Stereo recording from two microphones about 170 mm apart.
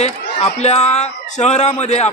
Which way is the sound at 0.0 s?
40° left (ahead or behind).